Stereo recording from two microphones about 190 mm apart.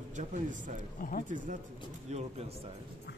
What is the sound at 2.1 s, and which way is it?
Speech, 35° right (ahead or behind).